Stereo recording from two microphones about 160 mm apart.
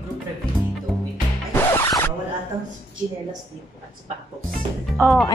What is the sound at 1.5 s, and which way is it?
Music, 15° left (ahead or behind).